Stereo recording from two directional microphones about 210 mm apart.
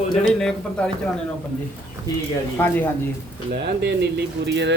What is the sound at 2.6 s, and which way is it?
Speech, 10° left (ahead or behind).